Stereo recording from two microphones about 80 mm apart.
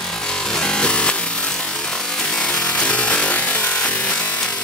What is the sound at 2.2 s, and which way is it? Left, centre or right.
Wood, centre.